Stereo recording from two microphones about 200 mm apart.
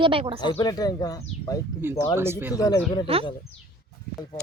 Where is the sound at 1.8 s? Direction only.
10° right (ahead or behind).